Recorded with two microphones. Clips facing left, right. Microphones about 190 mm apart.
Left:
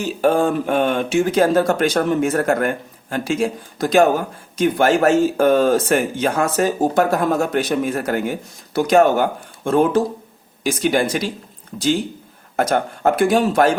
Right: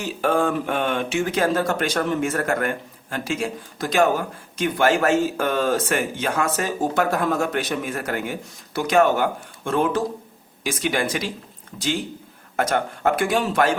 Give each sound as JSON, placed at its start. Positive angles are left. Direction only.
{"t": 0.0, "sound": "speech", "side_deg": 40}
{"t": 12.5, "sound": "speech", "side_deg": 40}